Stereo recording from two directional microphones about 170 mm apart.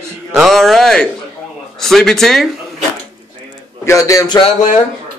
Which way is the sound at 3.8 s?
15° left (ahead or behind).